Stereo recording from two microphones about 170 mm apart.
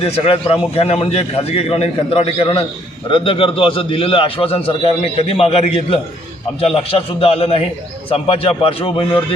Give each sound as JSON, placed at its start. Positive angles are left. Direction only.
{"t": 0.0, "sound": "a man's voice", "side_deg": 35}